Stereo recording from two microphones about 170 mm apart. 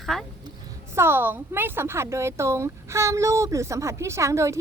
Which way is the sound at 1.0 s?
15° right (ahead or behind).